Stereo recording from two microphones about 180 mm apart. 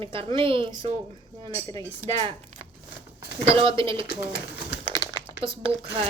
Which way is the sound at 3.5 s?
30° right (ahead or behind).